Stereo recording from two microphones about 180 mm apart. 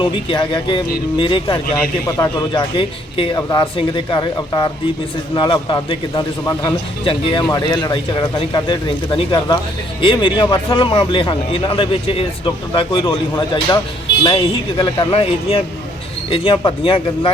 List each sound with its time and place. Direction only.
0.0 s a man's voice: 25° left (ahead or behind)
14.8 s a man's voice: 25° left (ahead or behind)